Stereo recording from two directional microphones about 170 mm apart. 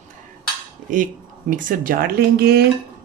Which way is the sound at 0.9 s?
50° right (ahead or behind).